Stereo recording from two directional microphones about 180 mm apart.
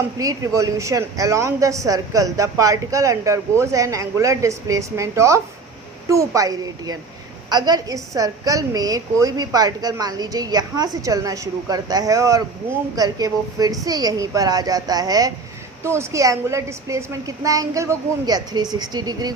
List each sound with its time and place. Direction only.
0.2 s a woman's voice: 20° right (ahead or behind)